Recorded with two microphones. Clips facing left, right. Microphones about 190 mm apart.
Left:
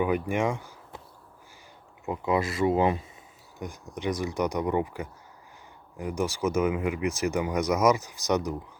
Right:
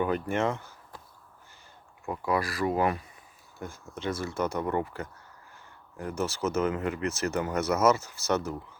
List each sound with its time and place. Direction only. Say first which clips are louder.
0.0 s speech: left 2 dB; 10° left (ahead or behind)
2.0 s speech: left 2 dB; 20° left (ahead or behind)